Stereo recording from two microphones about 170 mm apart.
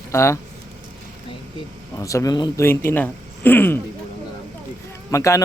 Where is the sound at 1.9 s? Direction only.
20° left (ahead or behind).